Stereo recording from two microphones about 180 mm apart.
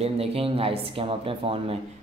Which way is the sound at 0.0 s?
35° right (ahead or behind).